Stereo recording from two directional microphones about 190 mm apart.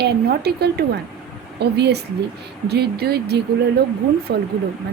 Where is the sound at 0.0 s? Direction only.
60° right (ahead or behind).